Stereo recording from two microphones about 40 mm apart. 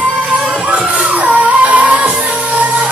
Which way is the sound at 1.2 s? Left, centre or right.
Right.